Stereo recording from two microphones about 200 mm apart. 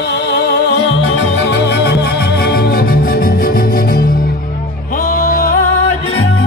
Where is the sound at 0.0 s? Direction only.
60° left (ahead or behind).